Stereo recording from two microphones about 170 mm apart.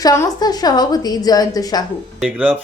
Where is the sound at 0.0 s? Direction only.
20° left (ahead or behind).